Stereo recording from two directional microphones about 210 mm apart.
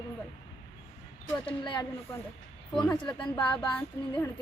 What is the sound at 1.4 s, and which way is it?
Speech, 20° left (ahead or behind).